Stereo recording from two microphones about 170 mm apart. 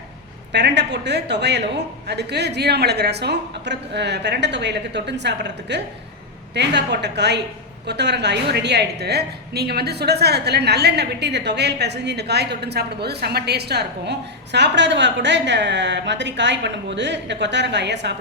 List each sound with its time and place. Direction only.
0.5 s a woman's voice: 85° right